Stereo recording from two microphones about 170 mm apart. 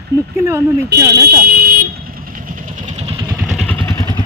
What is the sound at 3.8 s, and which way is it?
Vehicle, 20° left (ahead or behind).